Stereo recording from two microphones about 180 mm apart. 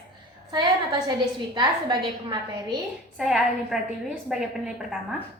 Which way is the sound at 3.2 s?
Centre (ahead or behind).